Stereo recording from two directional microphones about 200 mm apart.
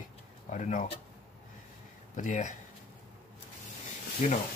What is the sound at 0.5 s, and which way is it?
Speech, 40° left (ahead or behind).